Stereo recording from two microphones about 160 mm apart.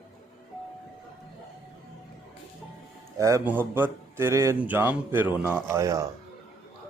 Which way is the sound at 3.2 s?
20° right (ahead or behind).